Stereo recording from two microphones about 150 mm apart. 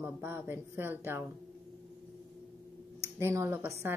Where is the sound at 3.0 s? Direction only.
20° right (ahead or behind).